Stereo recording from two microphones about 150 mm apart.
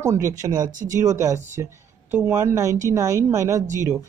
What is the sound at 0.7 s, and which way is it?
Speech, 60° right (ahead or behind).